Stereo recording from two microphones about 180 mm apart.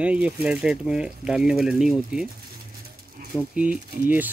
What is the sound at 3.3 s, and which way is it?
Speech, 5° right (ahead or behind).